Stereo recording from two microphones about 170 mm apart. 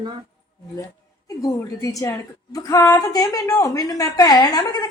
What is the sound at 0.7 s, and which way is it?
A woman's voice, 20° left (ahead or behind).